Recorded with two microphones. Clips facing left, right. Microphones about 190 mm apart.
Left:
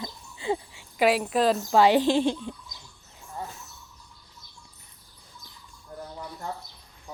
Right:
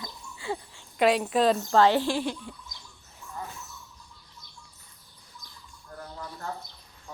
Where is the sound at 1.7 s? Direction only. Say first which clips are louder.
Left 4 dB; 15° left (ahead or behind).